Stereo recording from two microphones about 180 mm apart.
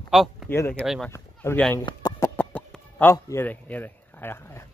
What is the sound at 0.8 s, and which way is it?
Speech, centre (ahead or behind).